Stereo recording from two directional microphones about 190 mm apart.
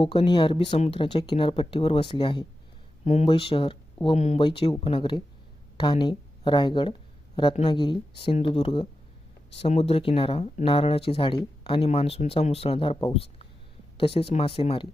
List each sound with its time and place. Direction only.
0.0 s speech: 25° left (ahead or behind)